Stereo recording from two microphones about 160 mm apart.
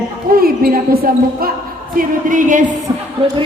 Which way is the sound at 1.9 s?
55° right (ahead or behind).